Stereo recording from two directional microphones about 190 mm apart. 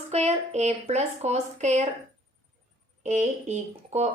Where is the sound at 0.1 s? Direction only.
35° right (ahead or behind).